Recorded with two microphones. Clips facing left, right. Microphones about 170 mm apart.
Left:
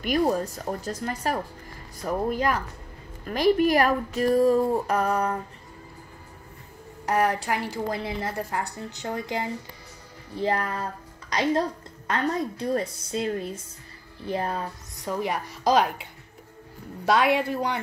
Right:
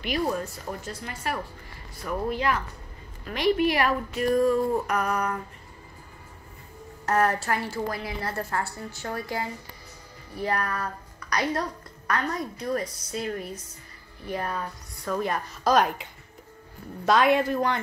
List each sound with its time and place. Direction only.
0.0 s speech: 40° left (ahead or behind)
7.1 s a woman's voice: 15° left (ahead or behind)
15.0 s a woman's voice: 15° left (ahead or behind)
17.0 s a woman's voice: 10° left (ahead or behind)